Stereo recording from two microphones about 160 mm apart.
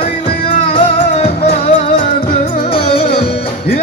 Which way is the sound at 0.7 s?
35° left (ahead or behind).